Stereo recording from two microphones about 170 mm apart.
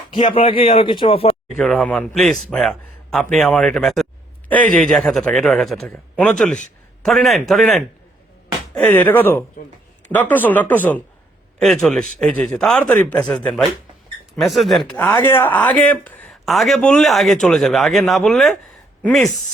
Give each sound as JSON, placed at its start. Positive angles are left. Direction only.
{"t": 0.1, "sound": "speech", "side_deg": 30}
{"t": 1.5, "sound": "speech", "side_deg": 0}